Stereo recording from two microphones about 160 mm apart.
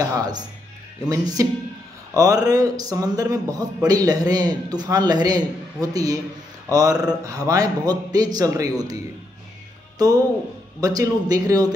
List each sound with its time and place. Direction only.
0.0 s a man's voice: 25° right (ahead or behind)
10.8 s a man's voice: 25° right (ahead or behind)